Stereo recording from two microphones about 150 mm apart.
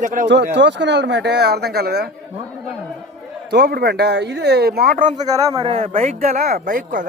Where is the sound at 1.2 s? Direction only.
90° right.